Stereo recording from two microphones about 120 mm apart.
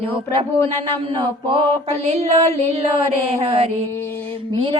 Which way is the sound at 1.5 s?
45° right (ahead or behind).